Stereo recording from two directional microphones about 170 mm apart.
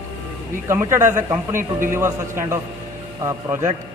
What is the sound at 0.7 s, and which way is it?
Speech, 15° right (ahead or behind).